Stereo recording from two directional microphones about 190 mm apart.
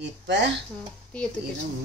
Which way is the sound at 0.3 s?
70° right (ahead or behind).